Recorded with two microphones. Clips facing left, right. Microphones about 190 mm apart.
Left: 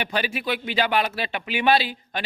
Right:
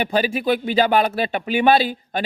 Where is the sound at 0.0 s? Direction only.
45° right (ahead or behind).